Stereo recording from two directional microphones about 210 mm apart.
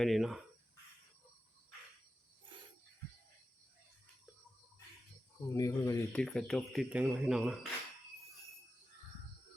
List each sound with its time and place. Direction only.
0.0 s speech: centre (ahead or behind)
5.5 s speech: 15° left (ahead or behind)
6.1 s speech: 5° left (ahead or behind)